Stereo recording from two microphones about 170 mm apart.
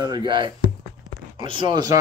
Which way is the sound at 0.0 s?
25° right (ahead or behind).